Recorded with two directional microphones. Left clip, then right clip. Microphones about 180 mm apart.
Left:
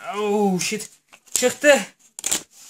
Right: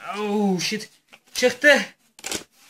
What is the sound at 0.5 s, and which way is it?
Speech, 65° left (ahead or behind).